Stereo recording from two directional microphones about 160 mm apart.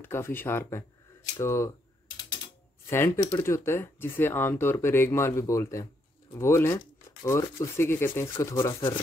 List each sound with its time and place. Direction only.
0.0 s speech: 15° left (ahead or behind)
2.9 s speech: 15° left (ahead or behind)